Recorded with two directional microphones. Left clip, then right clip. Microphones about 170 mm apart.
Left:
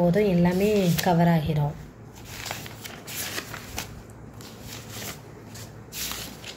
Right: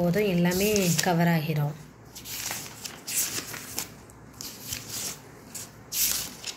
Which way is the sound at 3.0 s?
20° left (ahead or behind).